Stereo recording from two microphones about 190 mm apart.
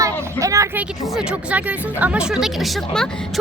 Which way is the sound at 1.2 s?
5° right (ahead or behind).